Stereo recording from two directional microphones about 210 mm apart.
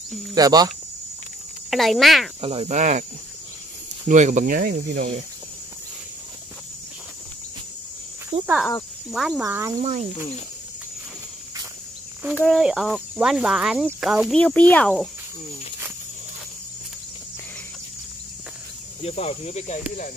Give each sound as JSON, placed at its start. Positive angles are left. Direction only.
{"t": 0.3, "sound": "speech", "side_deg": -20}
{"t": 1.7, "sound": "speech", "side_deg": 0}
{"t": 2.4, "sound": "cricket", "side_deg": -30}
{"t": 4.1, "sound": "speech", "side_deg": -35}
{"t": 8.3, "sound": "cricket", "side_deg": -30}
{"t": 9.1, "sound": "speech", "side_deg": 0}
{"t": 9.4, "sound": "speech", "side_deg": -15}
{"t": 9.8, "sound": "cricket", "side_deg": -35}
{"t": 12.4, "sound": "speech", "side_deg": 0}
{"t": 19.0, "sound": "speech", "side_deg": 30}